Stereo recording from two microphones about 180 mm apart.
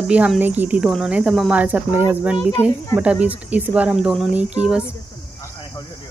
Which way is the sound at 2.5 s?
20° left (ahead or behind).